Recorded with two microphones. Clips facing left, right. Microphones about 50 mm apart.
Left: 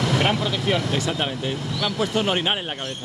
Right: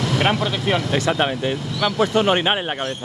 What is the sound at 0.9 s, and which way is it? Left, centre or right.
Speech, right.